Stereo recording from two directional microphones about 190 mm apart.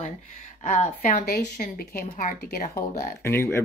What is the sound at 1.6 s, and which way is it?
Speech, 50° left (ahead or behind).